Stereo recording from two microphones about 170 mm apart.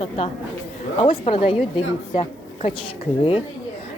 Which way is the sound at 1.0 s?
40° left (ahead or behind).